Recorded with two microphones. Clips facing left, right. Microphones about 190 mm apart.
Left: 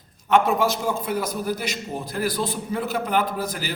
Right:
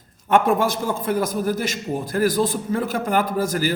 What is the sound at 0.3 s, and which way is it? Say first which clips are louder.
A man's voice: right 1 dB; 50° right (ahead or behind).